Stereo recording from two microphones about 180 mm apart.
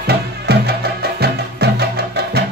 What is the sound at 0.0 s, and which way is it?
Music, 65° right (ahead or behind).